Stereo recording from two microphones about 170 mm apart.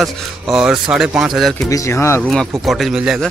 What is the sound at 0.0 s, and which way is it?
Speech, centre (ahead or behind).